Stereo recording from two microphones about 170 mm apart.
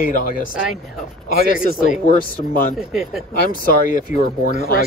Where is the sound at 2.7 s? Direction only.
Centre (ahead or behind).